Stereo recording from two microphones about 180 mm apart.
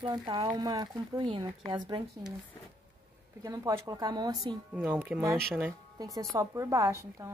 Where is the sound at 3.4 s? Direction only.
20° right (ahead or behind).